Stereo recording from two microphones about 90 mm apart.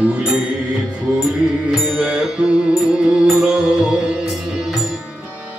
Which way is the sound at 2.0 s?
10° right (ahead or behind).